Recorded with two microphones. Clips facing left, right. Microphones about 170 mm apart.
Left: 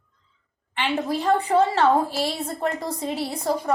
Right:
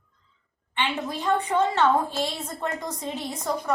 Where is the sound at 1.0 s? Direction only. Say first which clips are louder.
Left 5 dB; 35° left (ahead or behind).